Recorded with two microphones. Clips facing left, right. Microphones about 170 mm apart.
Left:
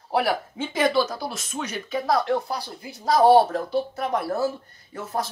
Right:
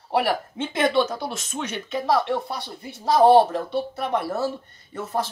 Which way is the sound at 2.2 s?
Centre (ahead or behind).